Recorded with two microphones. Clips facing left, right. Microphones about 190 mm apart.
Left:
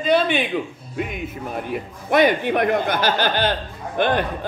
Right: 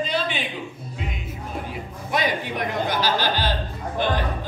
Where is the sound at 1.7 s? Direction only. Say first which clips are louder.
Left 10 dB; 60° left (ahead or behind).